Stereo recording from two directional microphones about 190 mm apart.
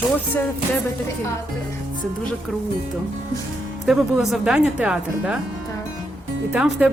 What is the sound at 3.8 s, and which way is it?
Speech, centre (ahead or behind).